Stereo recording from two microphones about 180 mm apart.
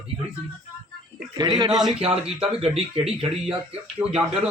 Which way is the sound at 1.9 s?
35° right (ahead or behind).